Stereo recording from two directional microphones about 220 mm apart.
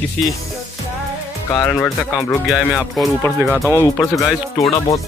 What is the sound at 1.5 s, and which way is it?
Music, 10° left (ahead or behind).